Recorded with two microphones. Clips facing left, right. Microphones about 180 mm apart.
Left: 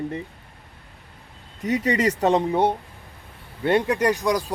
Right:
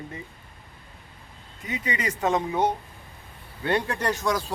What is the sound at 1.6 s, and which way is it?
Speech, 40° left (ahead or behind).